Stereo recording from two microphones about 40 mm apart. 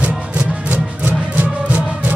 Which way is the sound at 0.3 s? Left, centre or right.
Right.